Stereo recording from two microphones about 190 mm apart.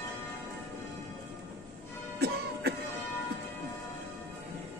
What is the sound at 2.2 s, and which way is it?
Music, 60° right (ahead or behind).